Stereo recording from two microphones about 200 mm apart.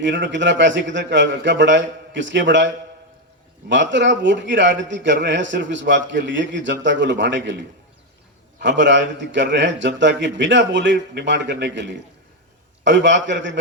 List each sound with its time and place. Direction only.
0.0 s a man's voice: 65° right (ahead or behind)
8.6 s a man's voice: 65° right (ahead or behind)